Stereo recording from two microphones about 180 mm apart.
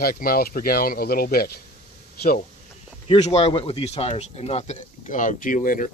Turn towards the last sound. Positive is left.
turn(degrees=45)  # may be behind; listen again after turning